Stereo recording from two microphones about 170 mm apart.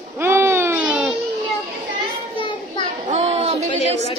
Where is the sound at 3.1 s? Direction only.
40° right (ahead or behind).